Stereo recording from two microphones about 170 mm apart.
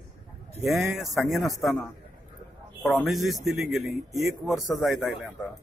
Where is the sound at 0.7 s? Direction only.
Centre (ahead or behind).